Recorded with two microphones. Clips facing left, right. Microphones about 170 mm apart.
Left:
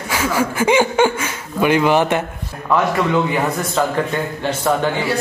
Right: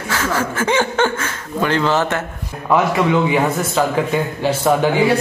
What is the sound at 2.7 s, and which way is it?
A man's voice, 5° right (ahead or behind).